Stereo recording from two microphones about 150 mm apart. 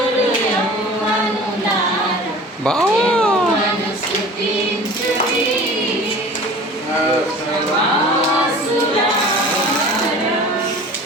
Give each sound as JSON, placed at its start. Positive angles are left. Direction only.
{"t": 2.6, "sound": "cat", "side_deg": 5}